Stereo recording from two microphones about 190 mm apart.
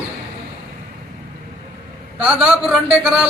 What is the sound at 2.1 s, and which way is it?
Speech, 5° right (ahead or behind).